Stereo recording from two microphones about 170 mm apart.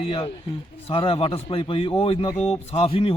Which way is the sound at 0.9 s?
35° left (ahead or behind).